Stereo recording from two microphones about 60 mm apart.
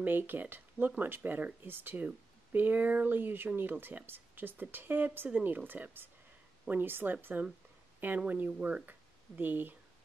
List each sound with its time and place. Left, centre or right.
0.0 s speech: right
8.5 s speech: centre
8.8 s speech: right